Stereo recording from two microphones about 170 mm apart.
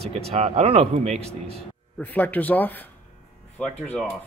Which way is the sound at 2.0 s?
10° left (ahead or behind).